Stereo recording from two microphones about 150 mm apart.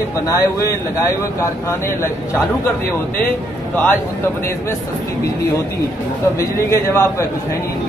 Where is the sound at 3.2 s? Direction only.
10° left (ahead or behind).